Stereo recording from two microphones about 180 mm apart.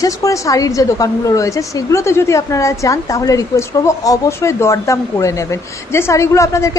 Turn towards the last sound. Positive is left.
turn(degrees=15)  # may be behind; listen again after turning